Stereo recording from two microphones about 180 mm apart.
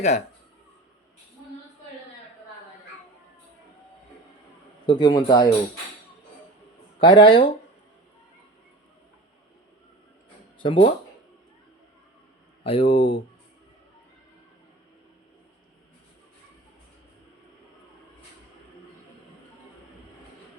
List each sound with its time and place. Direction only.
4.9 s a man's voice: 25° left (ahead or behind)
7.0 s a man's voice: 25° left (ahead or behind)
10.6 s a man's voice: 30° left (ahead or behind)
12.6 s speech: 30° left (ahead or behind)